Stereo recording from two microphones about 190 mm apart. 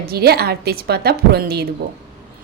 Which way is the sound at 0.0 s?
55° right (ahead or behind).